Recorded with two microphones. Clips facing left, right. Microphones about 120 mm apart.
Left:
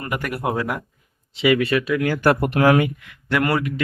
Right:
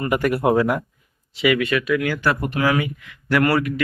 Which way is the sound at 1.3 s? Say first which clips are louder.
Left 1 dB; 25° left (ahead or behind).